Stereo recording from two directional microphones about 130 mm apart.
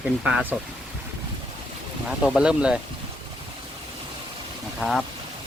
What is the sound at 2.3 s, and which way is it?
Speech, 5° right (ahead or behind).